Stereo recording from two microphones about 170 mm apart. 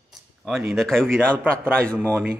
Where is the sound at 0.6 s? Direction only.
Centre (ahead or behind).